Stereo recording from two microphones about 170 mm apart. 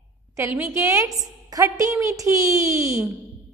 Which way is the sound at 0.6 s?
15° right (ahead or behind).